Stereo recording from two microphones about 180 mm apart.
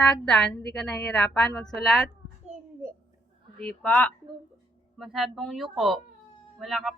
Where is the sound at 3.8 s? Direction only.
5° left (ahead or behind).